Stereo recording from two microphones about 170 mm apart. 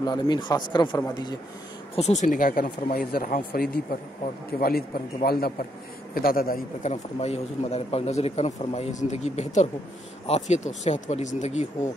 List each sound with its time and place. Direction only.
0.0 s speech: 25° left (ahead or behind)
2.0 s a man's voice: 40° left (ahead or behind); by 6.9 s 60° left (ahead or behind)
6.9 s speech: 40° left (ahead or behind)